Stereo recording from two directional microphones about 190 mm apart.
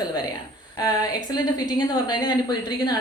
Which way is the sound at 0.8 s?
20° left (ahead or behind).